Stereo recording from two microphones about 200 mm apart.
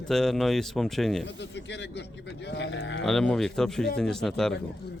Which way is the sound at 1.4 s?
60° left (ahead or behind).